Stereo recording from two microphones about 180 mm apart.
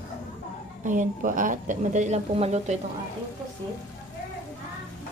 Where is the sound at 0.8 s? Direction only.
45° right (ahead or behind).